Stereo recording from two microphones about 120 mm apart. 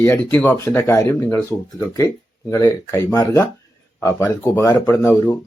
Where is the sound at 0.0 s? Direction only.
15° left (ahead or behind).